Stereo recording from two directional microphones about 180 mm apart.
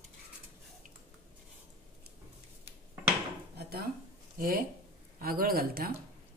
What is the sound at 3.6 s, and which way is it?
Dishes, 60° right (ahead or behind).